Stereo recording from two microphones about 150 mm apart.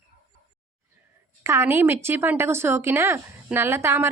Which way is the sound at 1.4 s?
15° right (ahead or behind).